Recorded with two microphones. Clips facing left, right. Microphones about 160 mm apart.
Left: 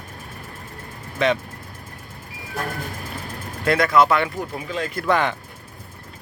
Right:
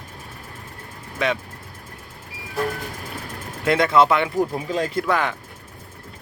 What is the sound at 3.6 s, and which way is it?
Speech, 20° right (ahead or behind).